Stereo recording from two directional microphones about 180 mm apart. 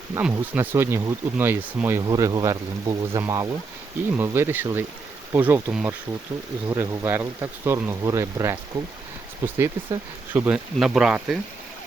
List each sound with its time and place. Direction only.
0.2 s speech: 10° right (ahead or behind)